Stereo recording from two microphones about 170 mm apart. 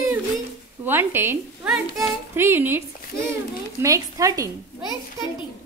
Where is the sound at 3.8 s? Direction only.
20° right (ahead or behind).